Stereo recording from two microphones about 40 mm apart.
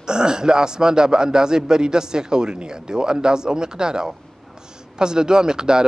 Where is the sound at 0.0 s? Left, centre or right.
Centre.